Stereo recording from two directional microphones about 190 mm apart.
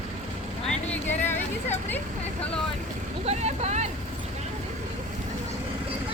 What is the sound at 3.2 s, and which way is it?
Boat, 35° right (ahead or behind).